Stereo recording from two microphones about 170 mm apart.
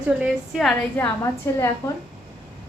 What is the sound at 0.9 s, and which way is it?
Speech, 15° left (ahead or behind).